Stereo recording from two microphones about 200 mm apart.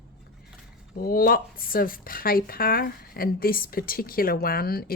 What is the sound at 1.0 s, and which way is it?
Speech, 45° left (ahead or behind).